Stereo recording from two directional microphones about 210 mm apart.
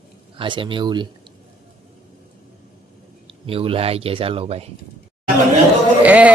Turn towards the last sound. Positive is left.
turn(degrees=-5)  # may be behind; listen again after turning